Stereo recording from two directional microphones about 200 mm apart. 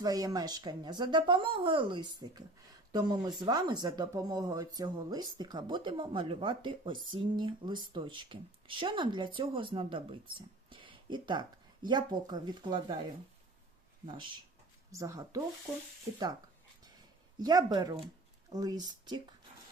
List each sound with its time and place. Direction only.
0.0 s speech: 20° right (ahead or behind)
14.9 s speech: 15° right (ahead or behind)
17.3 s speech: 20° right (ahead or behind)